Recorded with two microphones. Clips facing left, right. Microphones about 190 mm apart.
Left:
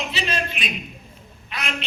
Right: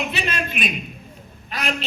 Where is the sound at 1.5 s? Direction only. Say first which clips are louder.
Right 5 dB; 40° right (ahead or behind).